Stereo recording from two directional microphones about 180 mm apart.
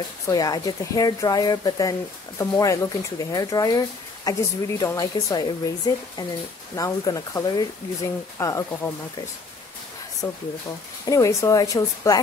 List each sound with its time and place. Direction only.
0.3 s speech: 20° left (ahead or behind)
10.2 s speech: 10° left (ahead or behind)